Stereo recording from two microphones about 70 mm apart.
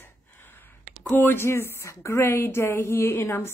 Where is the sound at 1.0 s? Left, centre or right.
Left.